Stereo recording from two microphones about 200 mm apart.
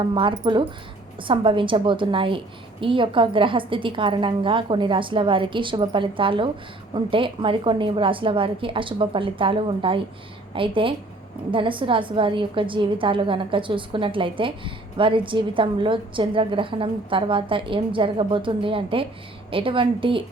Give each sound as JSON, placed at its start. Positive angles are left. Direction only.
{"t": 0.0, "sound": "a woman's voice", "side_deg": -25}